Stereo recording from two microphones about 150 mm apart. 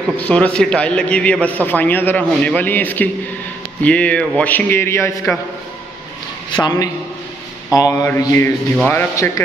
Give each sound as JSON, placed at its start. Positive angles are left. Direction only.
{"t": 0.2, "sound": "a man's voice", "side_deg": 10}
{"t": 6.5, "sound": "mantra", "side_deg": 25}
{"t": 8.7, "sound": "a man's voice", "side_deg": 10}